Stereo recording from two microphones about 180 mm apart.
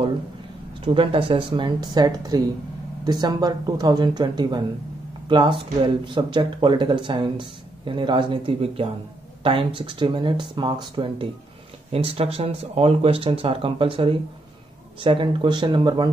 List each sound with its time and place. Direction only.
0.8 s speech: 30° right (ahead or behind)